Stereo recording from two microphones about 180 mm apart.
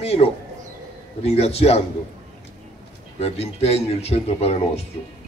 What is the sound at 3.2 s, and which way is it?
A man's voice, 35° left (ahead or behind).